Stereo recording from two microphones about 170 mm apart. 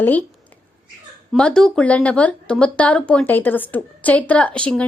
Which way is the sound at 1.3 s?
5° left (ahead or behind).